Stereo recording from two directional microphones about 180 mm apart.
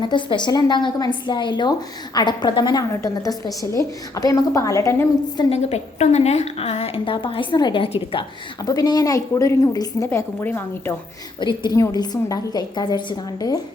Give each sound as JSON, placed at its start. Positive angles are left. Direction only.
{"t": 0.0, "sound": "a woman's voice", "side_deg": 25}
{"t": 5.5, "sound": "a woman's voice", "side_deg": 35}
{"t": 11.3, "sound": "a woman's voice", "side_deg": 25}